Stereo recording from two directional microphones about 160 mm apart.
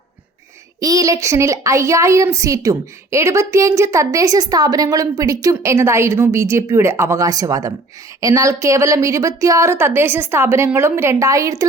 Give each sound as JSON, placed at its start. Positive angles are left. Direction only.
{"t": 0.8, "sound": "a woman's voice", "side_deg": -20}